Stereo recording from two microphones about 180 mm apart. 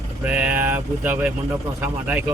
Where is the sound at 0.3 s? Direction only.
5° right (ahead or behind).